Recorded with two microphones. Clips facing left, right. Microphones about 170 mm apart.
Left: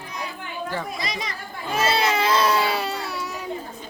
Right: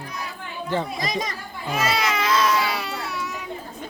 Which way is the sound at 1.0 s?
45° right (ahead or behind).